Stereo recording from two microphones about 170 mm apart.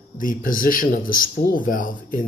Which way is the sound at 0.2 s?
55° left (ahead or behind).